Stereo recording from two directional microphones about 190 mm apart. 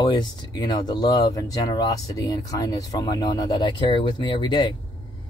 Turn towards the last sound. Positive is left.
turn(degrees=25)  # may be behind; listen again after turning